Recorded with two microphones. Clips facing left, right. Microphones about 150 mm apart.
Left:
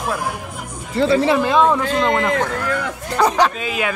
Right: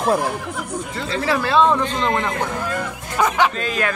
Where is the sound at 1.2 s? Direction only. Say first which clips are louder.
Right 1 dB; 20° left (ahead or behind).